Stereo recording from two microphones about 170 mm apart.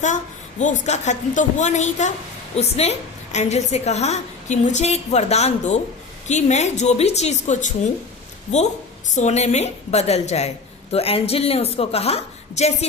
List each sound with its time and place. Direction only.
0.6 s a woman's voice: 45° left (ahead or behind)
9.1 s a woman's voice: 40° left (ahead or behind)